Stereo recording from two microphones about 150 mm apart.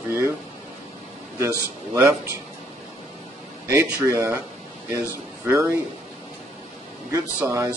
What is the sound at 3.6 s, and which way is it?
Speech, 20° right (ahead or behind).